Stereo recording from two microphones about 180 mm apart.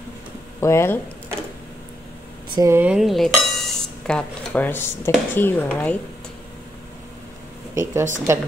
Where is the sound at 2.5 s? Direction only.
20° right (ahead or behind).